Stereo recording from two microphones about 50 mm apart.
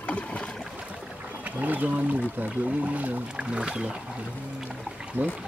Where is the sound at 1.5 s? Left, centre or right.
Right.